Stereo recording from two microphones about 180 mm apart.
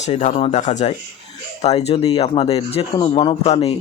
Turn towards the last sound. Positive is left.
turn(degrees=35)  # may be behind; listen again after turning